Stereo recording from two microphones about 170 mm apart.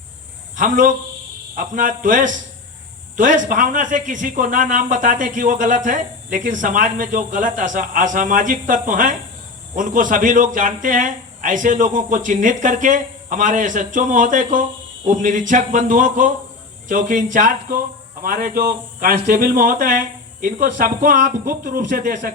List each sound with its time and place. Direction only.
0.5 s speech: 50° right (ahead or behind)